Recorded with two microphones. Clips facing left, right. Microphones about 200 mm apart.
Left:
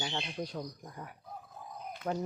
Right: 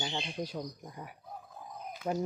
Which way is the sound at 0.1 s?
15° right (ahead or behind).